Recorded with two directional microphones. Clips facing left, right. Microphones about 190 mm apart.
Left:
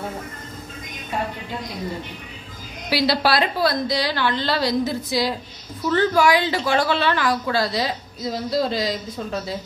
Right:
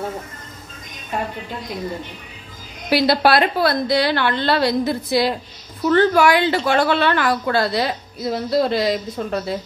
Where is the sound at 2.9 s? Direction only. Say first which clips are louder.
Right 4 dB; 50° right (ahead or behind).